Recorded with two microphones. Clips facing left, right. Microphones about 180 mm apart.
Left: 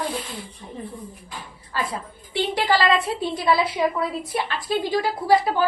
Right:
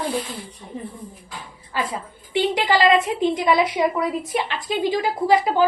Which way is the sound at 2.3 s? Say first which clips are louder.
Right 2 dB; 15° right (ahead or behind).